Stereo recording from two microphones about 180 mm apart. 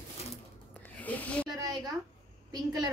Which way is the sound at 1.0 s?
10° left (ahead or behind).